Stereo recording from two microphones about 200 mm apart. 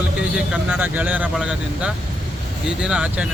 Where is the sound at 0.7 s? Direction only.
10° right (ahead or behind).